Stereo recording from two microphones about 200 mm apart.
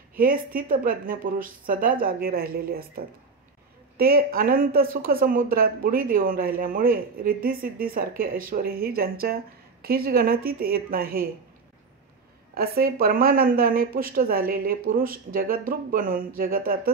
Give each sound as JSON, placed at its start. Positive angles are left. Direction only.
{"t": 0.1, "sound": "speech", "side_deg": -45}
{"t": 4.0, "sound": "speech", "side_deg": -50}
{"t": 12.5, "sound": "speech", "side_deg": -50}